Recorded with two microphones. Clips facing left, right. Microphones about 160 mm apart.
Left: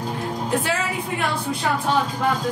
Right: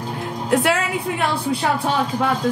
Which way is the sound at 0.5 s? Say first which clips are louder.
Right 7 dB; 85° right.